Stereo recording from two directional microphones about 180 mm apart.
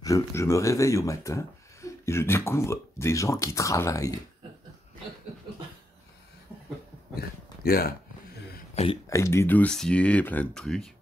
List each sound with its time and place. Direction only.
0.0 s speech: 15° left (ahead or behind)
7.2 s a sound: 55° left (ahead or behind)
8.8 s speech: 35° left (ahead or behind)
9.1 s speech: 15° left (ahead or behind)